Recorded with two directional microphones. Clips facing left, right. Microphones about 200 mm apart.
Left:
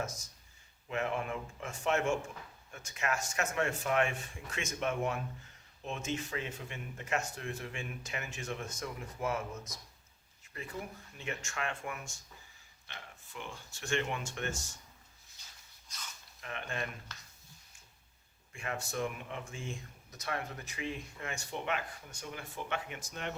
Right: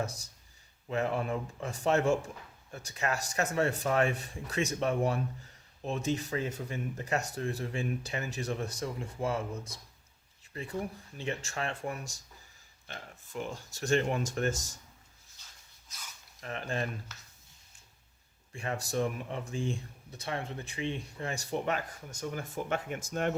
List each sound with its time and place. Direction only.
0.0 s speech: 35° right (ahead or behind)
16.4 s speech: 35° right (ahead or behind)
18.5 s speech: 35° right (ahead or behind)